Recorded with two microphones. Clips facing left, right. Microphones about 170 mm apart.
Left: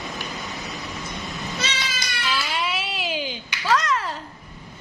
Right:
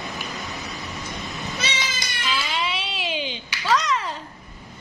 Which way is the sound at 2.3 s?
Centre (ahead or behind).